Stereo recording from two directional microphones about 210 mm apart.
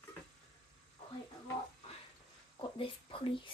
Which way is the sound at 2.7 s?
25° left (ahead or behind).